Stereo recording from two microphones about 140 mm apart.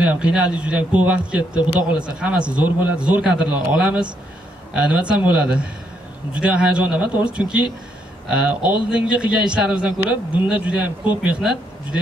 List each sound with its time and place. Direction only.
0.0 s a man's voice: 10° right (ahead or behind)
1.6 s speech: 35° left (ahead or behind)
2.0 s a man's voice: 5° right (ahead or behind)